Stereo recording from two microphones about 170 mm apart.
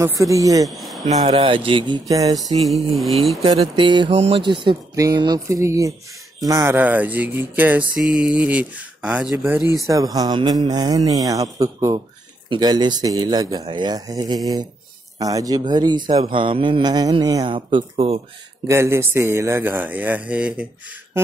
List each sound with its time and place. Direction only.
0.0 s mantra: 20° right (ahead or behind)
0.7 s a sound: centre (ahead or behind)
1.3 s mantra: 30° right (ahead or behind)
2.3 s mantra: centre (ahead or behind)
3.4 s mantra: 35° right (ahead or behind); by 5.9 s 20° right (ahead or behind)
6.4 s speech: 15° right (ahead or behind)
9.8 s mantra: 20° right (ahead or behind); by 18.2 s 35° right (ahead or behind)
18.7 s speech: 15° right (ahead or behind)